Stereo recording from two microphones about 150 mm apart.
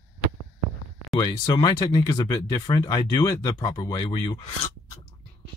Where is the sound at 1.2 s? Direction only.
25° left (ahead or behind).